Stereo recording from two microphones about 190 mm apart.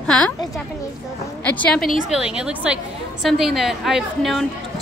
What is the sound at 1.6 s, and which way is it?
A woman's voice, 5° left (ahead or behind).